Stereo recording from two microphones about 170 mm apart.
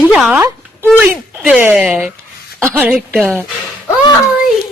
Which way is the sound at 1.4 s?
10° right (ahead or behind).